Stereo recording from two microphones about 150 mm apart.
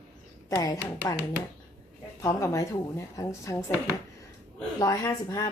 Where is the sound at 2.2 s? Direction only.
20° left (ahead or behind).